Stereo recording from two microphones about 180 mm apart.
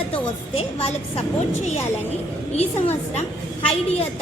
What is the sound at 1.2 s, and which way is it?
Speech, 35° left (ahead or behind).